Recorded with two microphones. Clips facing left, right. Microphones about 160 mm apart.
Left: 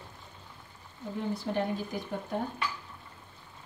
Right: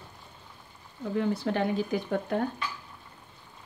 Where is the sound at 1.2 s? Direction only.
85° right; by 2.5 s 70° right (ahead or behind).